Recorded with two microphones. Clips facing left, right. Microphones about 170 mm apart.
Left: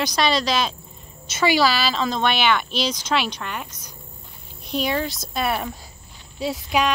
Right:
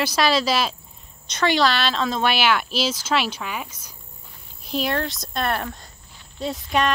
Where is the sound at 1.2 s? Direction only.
5° left (ahead or behind).